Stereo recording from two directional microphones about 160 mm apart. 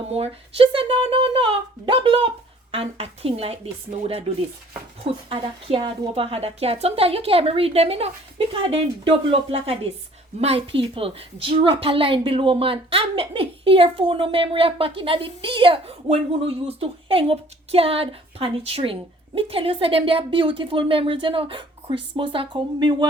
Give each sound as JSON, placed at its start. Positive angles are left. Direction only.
{"t": 0.1, "sound": "a woman's voice", "side_deg": -40}
{"t": 5.3, "sound": "a woman's voice", "side_deg": -35}